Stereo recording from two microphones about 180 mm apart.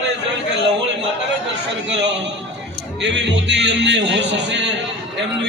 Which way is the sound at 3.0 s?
80° right.